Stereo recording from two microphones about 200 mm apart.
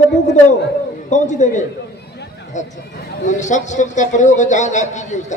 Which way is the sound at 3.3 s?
40° left (ahead or behind).